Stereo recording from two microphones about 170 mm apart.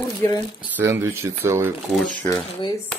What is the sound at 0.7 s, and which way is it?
Speech, 10° right (ahead or behind).